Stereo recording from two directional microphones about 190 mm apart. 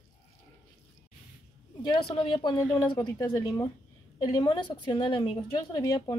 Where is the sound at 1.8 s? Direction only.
25° left (ahead or behind).